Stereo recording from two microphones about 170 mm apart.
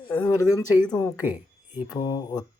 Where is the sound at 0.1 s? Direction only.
20° left (ahead or behind).